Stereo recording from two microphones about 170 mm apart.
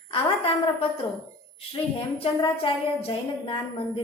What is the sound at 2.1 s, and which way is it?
A woman's voice, 30° left (ahead or behind).